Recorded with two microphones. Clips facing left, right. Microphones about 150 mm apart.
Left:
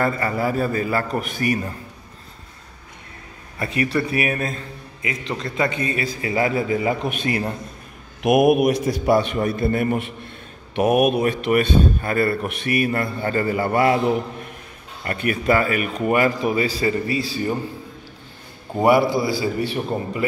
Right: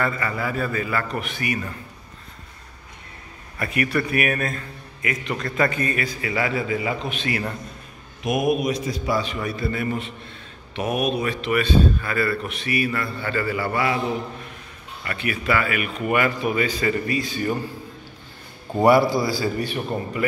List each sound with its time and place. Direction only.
0.0 s a man's voice: 40° left (ahead or behind)
3.5 s a man's voice: 25° left (ahead or behind)
6.0 s a man's voice: 35° left (ahead or behind)
8.2 s a man's voice: 65° left (ahead or behind)
15.0 s a man's voice: 45° left (ahead or behind); by 17.6 s 25° left (ahead or behind)
18.7 s a man's voice: 20° left (ahead or behind)